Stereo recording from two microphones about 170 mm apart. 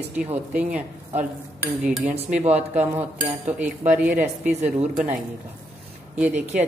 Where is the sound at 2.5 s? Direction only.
10° right (ahead or behind).